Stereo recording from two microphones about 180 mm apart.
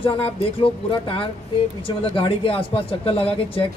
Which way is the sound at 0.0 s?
30° left (ahead or behind).